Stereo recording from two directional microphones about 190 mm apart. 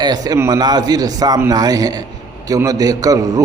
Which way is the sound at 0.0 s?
20° right (ahead or behind).